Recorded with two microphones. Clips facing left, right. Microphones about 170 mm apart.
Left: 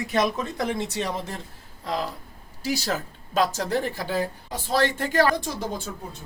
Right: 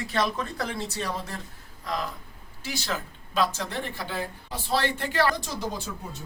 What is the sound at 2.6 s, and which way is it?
Speech, 40° left (ahead or behind).